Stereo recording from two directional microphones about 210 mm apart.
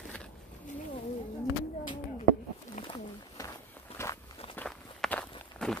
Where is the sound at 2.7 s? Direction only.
25° left (ahead or behind); by 5.8 s 5° left (ahead or behind).